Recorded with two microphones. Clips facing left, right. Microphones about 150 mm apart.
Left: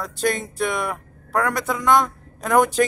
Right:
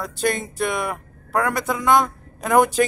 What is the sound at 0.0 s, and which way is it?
A man's voice, centre (ahead or behind).